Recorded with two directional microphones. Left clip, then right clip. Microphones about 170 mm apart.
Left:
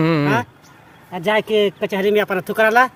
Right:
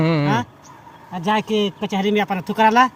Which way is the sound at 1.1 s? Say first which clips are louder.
Left 3 dB; 70° left (ahead or behind).